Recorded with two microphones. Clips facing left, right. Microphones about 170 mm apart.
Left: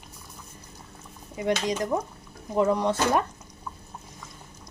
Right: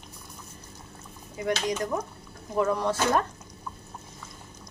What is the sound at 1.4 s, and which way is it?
Speech, 20° left (ahead or behind).